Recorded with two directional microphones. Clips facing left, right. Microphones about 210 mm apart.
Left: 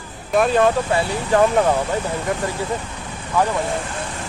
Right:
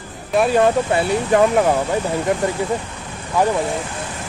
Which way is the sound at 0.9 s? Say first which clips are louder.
Right 2 dB; 20° right (ahead or behind).